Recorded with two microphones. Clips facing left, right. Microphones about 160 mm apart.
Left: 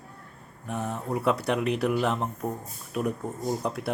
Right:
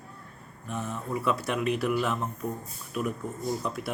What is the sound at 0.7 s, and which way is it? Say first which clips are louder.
Speech: left 2 dB; 40° left (ahead or behind).